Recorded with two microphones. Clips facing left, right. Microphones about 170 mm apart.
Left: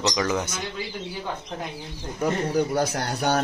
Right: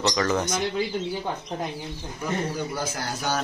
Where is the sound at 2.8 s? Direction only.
65° left (ahead or behind).